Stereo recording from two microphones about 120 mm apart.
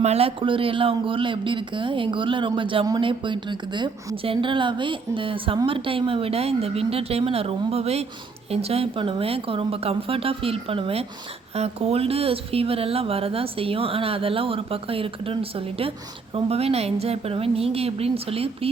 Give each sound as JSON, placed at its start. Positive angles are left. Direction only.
{"t": 0.0, "sound": "a woman's voice", "side_deg": -60}